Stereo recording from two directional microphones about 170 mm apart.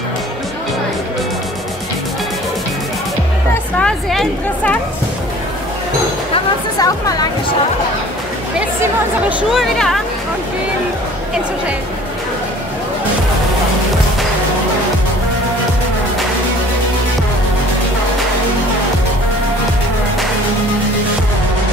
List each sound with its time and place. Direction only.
3.8 s speech: 5° left (ahead or behind)
6.8 s speech: 20° left (ahead or behind)
9.4 s speech: centre (ahead or behind)